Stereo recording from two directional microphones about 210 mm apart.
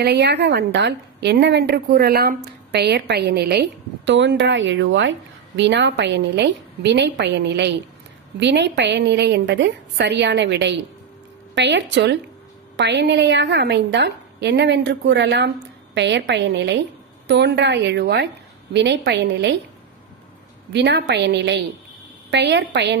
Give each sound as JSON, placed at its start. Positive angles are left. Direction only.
{"t": 0.0, "sound": "a woman's voice", "side_deg": -55}
{"t": 20.7, "sound": "a woman's voice", "side_deg": -55}